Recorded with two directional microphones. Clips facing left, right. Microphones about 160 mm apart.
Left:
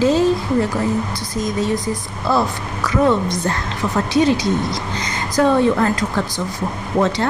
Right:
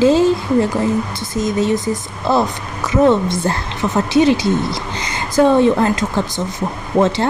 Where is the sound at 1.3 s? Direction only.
25° right (ahead or behind).